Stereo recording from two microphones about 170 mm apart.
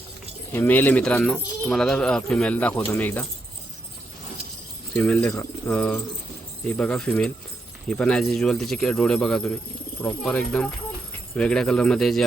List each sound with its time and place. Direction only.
0.5 s speech: 10° left (ahead or behind)
4.9 s a man's voice: 5° left (ahead or behind)